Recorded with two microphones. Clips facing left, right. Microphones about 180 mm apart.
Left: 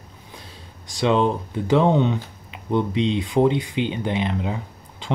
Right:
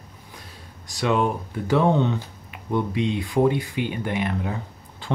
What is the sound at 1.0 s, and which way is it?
Speech, 25° left (ahead or behind).